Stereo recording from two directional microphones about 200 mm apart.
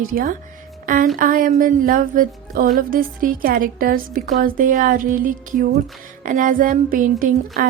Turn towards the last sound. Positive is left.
turn(degrees=-45)  # may be behind; listen again after turning